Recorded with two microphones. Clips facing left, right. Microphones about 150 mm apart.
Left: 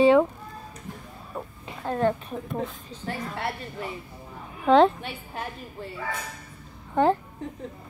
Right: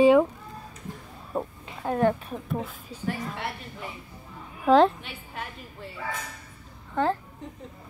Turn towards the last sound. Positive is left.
turn(degrees=20)  # may be behind; listen again after turning